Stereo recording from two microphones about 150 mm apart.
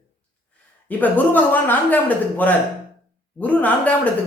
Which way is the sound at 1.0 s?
10° left (ahead or behind).